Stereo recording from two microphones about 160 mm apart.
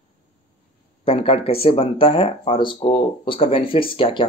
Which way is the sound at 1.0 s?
35° left (ahead or behind).